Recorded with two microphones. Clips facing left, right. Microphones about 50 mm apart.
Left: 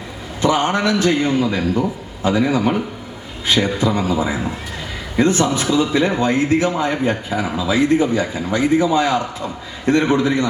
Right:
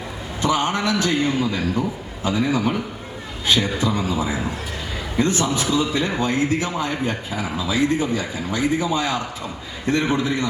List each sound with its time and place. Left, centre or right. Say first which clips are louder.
0.4 s a man's voice: left 4 dB; left